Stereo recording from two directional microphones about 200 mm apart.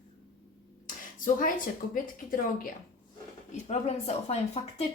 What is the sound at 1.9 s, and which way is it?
Speech, 45° left (ahead or behind).